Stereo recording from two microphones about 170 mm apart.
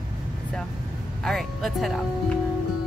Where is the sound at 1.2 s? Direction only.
Centre (ahead or behind).